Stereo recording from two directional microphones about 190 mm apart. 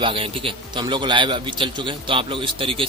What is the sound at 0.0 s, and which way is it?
A man's voice, 30° right (ahead or behind).